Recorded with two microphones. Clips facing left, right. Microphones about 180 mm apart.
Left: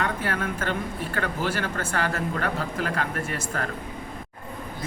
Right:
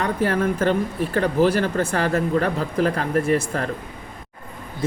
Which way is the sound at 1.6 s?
35° right (ahead or behind).